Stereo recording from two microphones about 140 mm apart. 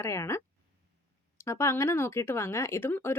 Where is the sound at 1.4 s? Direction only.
20° left (ahead or behind).